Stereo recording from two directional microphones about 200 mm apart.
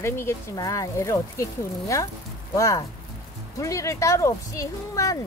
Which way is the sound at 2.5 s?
15° left (ahead or behind).